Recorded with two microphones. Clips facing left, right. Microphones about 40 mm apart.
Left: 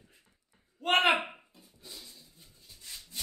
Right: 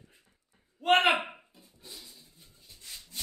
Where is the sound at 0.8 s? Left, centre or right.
Centre.